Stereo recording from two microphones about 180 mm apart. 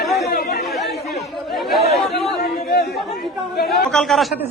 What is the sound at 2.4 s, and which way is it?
Chatter, 60° left (ahead or behind).